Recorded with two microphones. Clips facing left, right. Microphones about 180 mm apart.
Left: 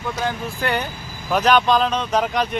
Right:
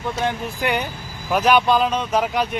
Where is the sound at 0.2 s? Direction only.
20° right (ahead or behind).